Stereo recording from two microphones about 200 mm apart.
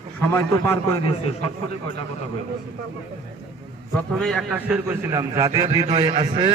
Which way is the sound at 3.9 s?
5° left (ahead or behind).